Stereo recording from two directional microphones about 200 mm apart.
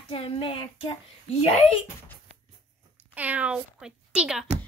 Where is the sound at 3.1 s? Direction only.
5° right (ahead or behind).